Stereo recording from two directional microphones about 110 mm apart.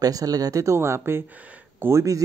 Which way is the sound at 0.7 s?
20° right (ahead or behind).